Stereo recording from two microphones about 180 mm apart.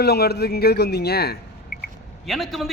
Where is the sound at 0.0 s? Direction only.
60° left (ahead or behind).